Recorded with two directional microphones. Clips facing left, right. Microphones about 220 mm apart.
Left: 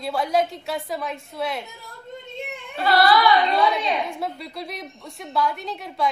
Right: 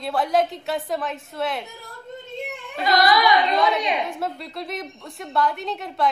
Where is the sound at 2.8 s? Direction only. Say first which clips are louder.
Left 1 dB; 15° right (ahead or behind).